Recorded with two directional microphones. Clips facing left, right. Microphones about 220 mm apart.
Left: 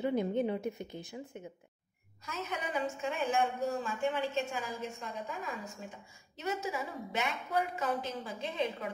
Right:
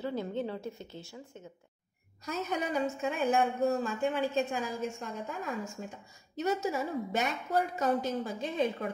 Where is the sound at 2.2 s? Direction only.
40° right (ahead or behind).